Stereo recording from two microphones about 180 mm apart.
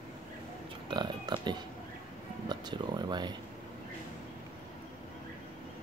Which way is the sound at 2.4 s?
25° right (ahead or behind).